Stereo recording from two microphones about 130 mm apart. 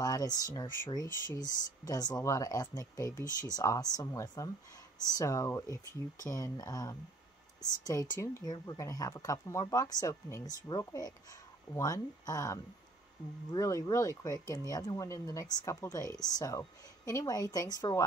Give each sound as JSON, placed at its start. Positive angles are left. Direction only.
{"t": 0.0, "sound": "speech", "side_deg": 30}